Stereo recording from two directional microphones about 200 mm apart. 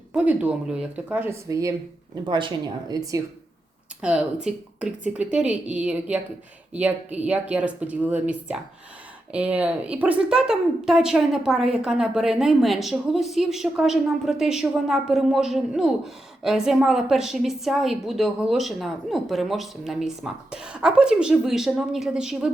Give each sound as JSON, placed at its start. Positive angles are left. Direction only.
{"t": 0.1, "sound": "speech", "side_deg": -5}
{"t": 4.0, "sound": "a woman's voice", "side_deg": -5}